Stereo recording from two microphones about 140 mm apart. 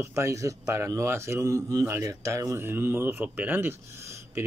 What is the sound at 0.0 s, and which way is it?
Speech, 20° right (ahead or behind).